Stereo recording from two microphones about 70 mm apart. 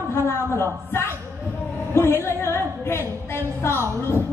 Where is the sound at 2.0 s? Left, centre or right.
Left.